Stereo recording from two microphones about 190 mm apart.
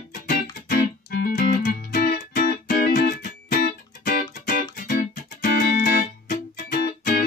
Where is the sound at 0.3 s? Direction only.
55° left (ahead or behind).